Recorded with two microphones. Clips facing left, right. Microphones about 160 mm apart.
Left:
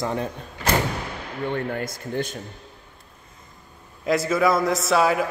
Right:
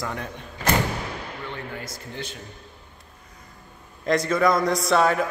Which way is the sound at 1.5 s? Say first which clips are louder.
Left 8 dB; 55° left (ahead or behind).